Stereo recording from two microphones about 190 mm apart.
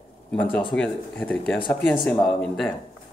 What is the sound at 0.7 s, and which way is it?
Speech, 5° left (ahead or behind).